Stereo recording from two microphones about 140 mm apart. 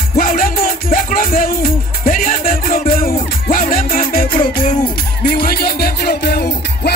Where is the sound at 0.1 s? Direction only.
80° left.